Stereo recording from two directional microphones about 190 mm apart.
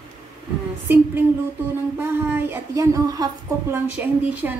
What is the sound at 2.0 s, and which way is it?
Speech, 10° right (ahead or behind).